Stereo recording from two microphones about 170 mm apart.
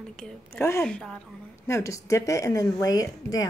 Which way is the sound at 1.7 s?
20° left (ahead or behind).